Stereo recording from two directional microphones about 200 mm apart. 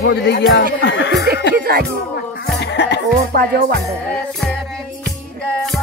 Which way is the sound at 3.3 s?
50° right (ahead or behind).